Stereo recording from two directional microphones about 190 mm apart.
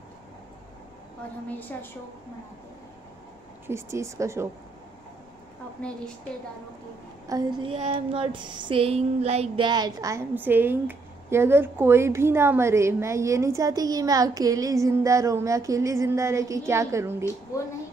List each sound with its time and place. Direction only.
1.5 s a woman's voice: 10° left (ahead or behind)
3.6 s child singing: 15° right (ahead or behind)
5.8 s a woman's voice: 5° left (ahead or behind)
7.2 s a sound: 25° right (ahead or behind)
7.9 s child singing: 25° right (ahead or behind)